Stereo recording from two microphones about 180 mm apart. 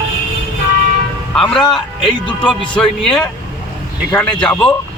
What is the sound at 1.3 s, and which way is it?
Speech, 5° left (ahead or behind).